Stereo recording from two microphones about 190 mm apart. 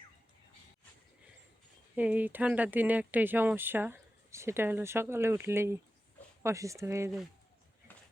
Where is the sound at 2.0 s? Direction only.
10° right (ahead or behind).